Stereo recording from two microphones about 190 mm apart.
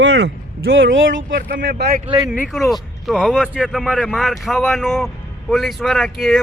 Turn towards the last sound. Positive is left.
turn(degrees=0)  # may be behind; listen again after turning